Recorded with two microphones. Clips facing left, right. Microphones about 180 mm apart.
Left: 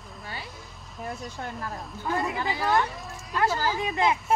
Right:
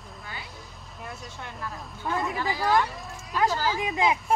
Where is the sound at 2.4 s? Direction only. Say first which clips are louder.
Right 1 dB; 25° left (ahead or behind).